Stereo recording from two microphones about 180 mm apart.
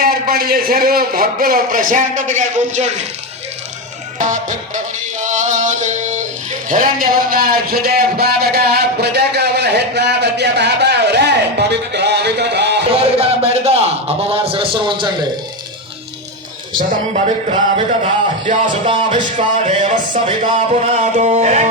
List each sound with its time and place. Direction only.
0.0 s a man's voice: 55° right (ahead or behind)
4.2 s a man's voice: 45° right (ahead or behind)
5.2 s music: 45° right (ahead or behind); by 12.8 s 70° right (ahead or behind)
12.9 s music: 35° right (ahead or behind)
14.3 s a man's voice: 30° right (ahead or behind)
17.7 s a man's voice: 35° right (ahead or behind)
19.5 s music: 45° right (ahead or behind)